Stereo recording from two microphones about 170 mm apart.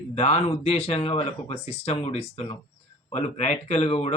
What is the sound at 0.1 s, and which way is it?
A man's voice, 40° left (ahead or behind).